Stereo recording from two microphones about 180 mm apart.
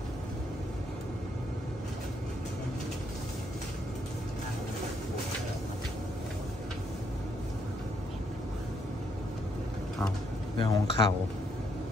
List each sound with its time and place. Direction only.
10.6 s speech: 25° left (ahead or behind)